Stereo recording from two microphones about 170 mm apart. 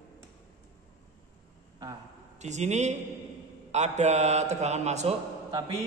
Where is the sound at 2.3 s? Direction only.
45° right (ahead or behind).